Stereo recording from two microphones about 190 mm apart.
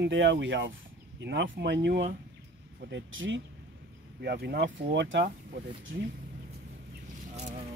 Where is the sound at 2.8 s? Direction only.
80° right.